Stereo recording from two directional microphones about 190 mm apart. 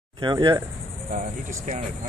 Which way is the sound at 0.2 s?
25° right (ahead or behind).